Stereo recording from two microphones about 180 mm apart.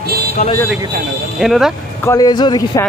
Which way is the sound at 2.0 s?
20° left (ahead or behind).